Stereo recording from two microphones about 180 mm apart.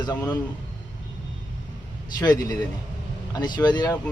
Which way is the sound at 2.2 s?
20° left (ahead or behind).